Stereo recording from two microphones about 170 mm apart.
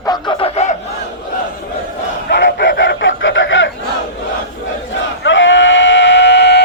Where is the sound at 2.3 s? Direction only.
90° left.